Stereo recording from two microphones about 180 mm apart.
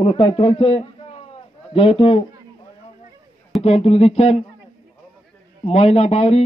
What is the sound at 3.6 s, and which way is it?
Speech, 35° left (ahead or behind).